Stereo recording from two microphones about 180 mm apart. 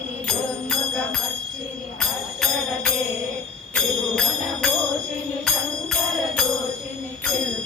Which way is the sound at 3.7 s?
Centre (ahead or behind).